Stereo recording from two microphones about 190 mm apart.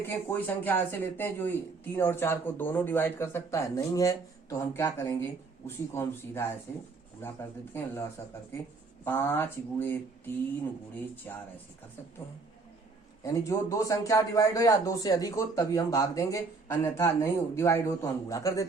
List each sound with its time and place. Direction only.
0.0 s a man's voice: 10° left (ahead or behind)
7.7 s a man's voice: 10° left (ahead or behind)
13.2 s a man's voice: 15° left (ahead or behind)